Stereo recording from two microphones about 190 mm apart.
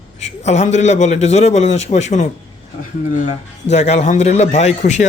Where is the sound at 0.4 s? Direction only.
35° left (ahead or behind).